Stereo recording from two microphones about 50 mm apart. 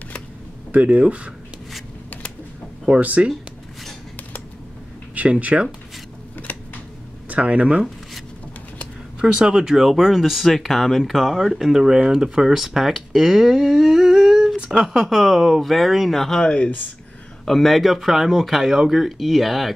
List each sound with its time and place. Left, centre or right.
0.7 s speech: right
3.0 s speech: right
5.1 s speech: right
6.5 s scissors: left
7.2 s speech: right
9.3 s speech: centre
16.4 s speech: centre
17.5 s speech: centre